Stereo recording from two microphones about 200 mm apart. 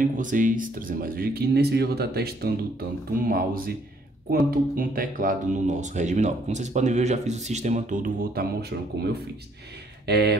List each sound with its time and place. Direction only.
0.0 s speech: 40° right (ahead or behind)